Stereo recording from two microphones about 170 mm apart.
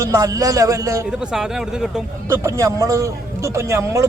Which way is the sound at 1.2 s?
5° right (ahead or behind).